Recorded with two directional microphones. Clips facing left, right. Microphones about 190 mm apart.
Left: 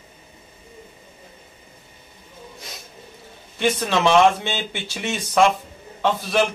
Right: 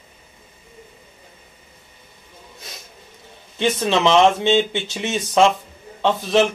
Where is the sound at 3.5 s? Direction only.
20° right (ahead or behind).